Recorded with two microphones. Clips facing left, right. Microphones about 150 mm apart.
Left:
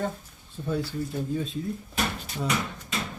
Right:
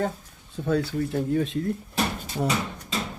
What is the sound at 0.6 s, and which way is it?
Speech, 70° right (ahead or behind).